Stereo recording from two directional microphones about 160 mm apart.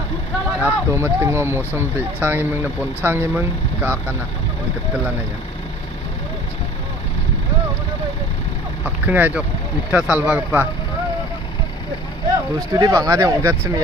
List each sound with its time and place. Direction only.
0.6 s speech: 15° right (ahead or behind)
8.8 s speech: 10° right (ahead or behind)
12.7 s speech: 25° right (ahead or behind)